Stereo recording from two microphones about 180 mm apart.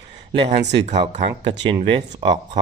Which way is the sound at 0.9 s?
40° right (ahead or behind).